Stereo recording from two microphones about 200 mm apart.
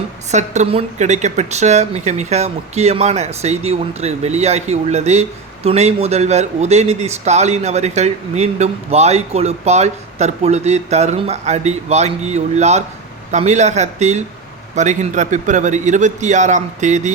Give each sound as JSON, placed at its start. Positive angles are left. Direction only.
{"t": 0.3, "sound": "a man's voice", "side_deg": -35}